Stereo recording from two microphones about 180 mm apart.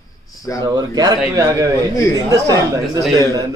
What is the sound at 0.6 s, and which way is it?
Speech, 20° right (ahead or behind).